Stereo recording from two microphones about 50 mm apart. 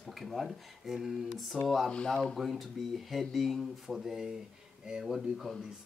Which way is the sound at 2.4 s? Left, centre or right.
Centre.